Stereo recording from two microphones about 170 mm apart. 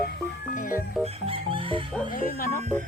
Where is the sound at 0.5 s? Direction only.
55° left (ahead or behind).